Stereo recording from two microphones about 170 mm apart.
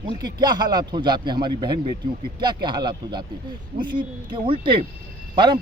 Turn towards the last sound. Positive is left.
turn(degrees=-25)  # may be behind; listen again after turning